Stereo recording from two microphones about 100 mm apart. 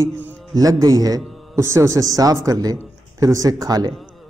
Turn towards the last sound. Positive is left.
turn(degrees=-40)  # may be behind; listen again after turning